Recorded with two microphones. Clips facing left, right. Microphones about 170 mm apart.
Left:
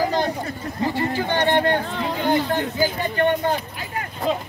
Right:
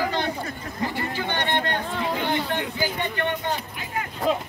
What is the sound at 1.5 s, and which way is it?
Speech, 15° left (ahead or behind).